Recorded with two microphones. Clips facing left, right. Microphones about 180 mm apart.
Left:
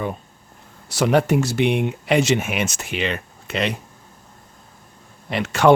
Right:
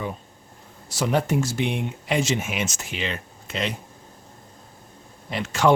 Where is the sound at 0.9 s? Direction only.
70° left (ahead or behind).